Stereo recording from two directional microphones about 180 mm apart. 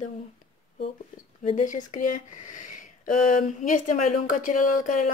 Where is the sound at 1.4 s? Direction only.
45° left (ahead or behind).